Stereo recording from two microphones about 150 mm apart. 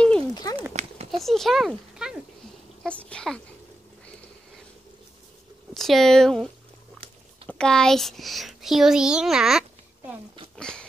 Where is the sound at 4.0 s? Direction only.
5° left (ahead or behind).